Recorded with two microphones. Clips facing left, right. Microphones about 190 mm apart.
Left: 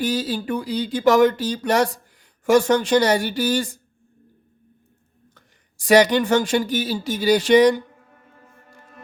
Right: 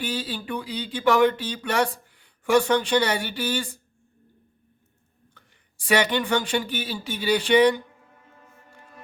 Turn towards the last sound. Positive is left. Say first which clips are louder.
# left 4 dB
turn(degrees=40)  # may be behind; listen again after turning